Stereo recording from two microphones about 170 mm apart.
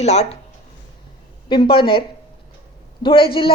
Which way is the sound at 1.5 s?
30° left (ahead or behind).